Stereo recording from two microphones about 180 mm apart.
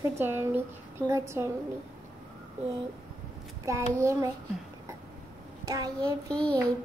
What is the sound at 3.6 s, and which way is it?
Speech, 15° right (ahead or behind).